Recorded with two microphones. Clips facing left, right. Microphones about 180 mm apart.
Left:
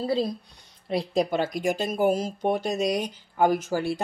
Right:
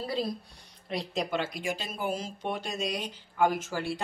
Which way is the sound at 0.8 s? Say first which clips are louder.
Left 8 dB; 35° left (ahead or behind).